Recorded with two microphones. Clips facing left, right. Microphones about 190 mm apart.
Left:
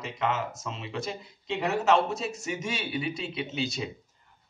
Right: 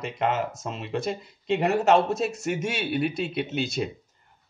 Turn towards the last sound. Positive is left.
turn(degrees=-60)  # may be behind; listen again after turning